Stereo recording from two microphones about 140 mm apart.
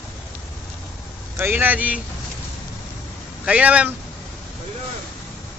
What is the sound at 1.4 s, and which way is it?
Speech, 15° right (ahead or behind).